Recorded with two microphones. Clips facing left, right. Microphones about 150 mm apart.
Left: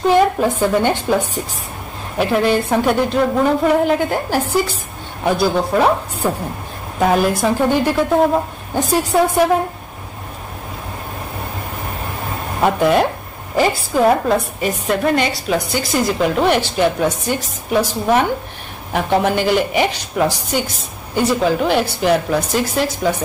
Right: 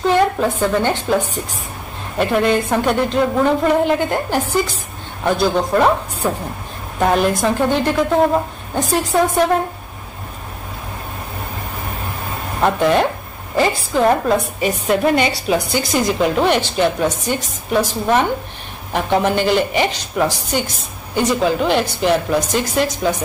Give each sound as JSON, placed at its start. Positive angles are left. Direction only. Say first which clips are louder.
{"t": 0.4, "sound": "a woman's voice", "louder": "left 1 dB", "side_deg": 10}
{"t": 12.6, "sound": "a woman's voice", "louder": "left 1 dB", "side_deg": 5}